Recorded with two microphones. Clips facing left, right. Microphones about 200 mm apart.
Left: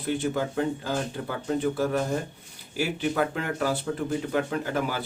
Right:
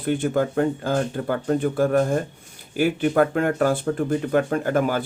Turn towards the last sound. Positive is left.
turn(degrees=-50)  # may be behind; listen again after turning